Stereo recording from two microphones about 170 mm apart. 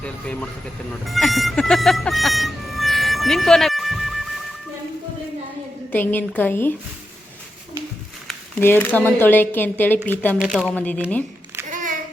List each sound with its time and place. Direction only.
0.0 s a woman's voice: 5° left (ahead or behind)
1.0 s music: centre (ahead or behind)
5.9 s a woman's voice: 10° left (ahead or behind)
8.3 s a woman's voice: 10° left (ahead or behind)
10.3 s speech: 5° right (ahead or behind)
10.8 s a woman's voice: 10° left (ahead or behind)
11.7 s child singing: 50° right (ahead or behind)